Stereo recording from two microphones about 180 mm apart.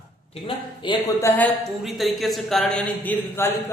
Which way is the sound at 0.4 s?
25° left (ahead or behind).